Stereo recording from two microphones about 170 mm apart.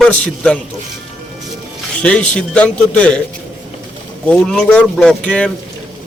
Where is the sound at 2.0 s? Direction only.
5° left (ahead or behind).